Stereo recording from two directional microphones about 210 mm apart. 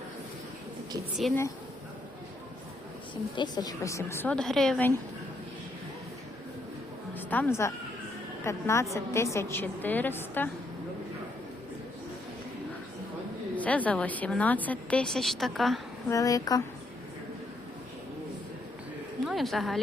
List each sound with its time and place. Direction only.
1.2 s a woman's voice: centre (ahead or behind)
3.3 s a woman's voice: 20° left (ahead or behind)
7.2 s a woman's voice: 10° left (ahead or behind)
13.6 s a woman's voice: 5° left (ahead or behind)
16.0 s a woman's voice: 15° left (ahead or behind)
19.2 s a woman's voice: centre (ahead or behind)